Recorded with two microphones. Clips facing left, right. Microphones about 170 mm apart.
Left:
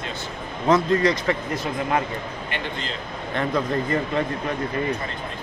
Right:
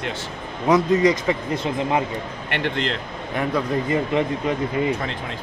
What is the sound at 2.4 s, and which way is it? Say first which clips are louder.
Speech: right 9 dB; 70° right (ahead or behind).